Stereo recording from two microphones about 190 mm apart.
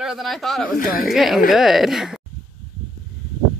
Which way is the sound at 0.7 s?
50° left (ahead or behind).